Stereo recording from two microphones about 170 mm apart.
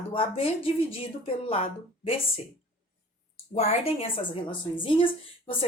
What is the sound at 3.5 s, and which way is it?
Speech, 40° left (ahead or behind).